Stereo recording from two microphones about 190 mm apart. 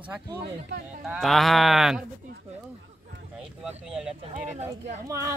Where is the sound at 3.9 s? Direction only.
5° right (ahead or behind).